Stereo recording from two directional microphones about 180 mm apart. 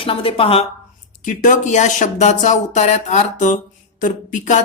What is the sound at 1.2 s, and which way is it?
A woman's voice, 45° left (ahead or behind).